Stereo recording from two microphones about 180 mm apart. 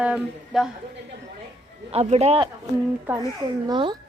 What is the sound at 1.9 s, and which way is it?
Speech, 35° right (ahead or behind).